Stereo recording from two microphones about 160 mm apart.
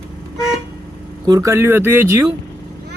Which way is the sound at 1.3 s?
20° right (ahead or behind).